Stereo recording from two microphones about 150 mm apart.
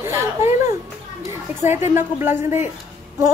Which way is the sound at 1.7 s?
15° right (ahead or behind).